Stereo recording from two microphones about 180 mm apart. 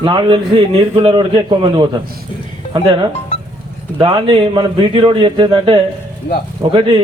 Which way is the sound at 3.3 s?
35° left (ahead or behind).